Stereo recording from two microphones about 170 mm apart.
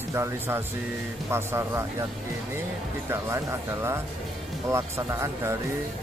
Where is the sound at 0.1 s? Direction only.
15° right (ahead or behind).